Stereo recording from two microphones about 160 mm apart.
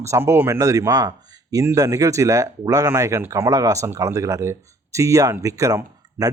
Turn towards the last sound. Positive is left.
turn(degrees=-20)  # may be behind; listen again after turning